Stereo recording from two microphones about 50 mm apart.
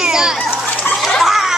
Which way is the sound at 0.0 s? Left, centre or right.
Centre.